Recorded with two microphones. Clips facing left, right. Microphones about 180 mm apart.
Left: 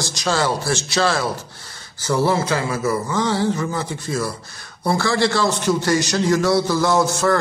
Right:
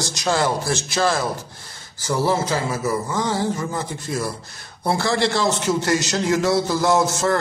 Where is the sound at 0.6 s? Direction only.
65° left (ahead or behind).